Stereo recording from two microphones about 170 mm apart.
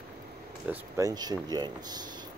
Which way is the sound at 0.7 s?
20° right (ahead or behind).